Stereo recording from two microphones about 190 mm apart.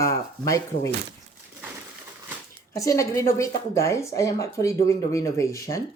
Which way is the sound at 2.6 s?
15° left (ahead or behind).